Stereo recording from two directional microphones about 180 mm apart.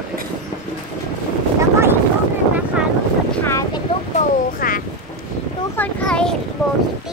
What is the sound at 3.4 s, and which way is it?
Boat, 15° left (ahead or behind).